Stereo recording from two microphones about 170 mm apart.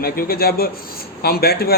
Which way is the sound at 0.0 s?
65° left (ahead or behind).